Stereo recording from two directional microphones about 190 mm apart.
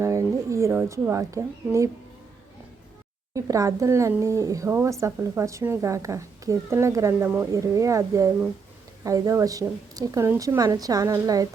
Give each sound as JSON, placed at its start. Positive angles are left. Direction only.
{"t": 0.0, "sound": "speech", "side_deg": -15}
{"t": 3.3, "sound": "speech", "side_deg": -15}